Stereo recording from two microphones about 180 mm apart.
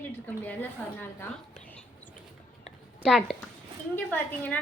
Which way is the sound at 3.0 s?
Centre (ahead or behind).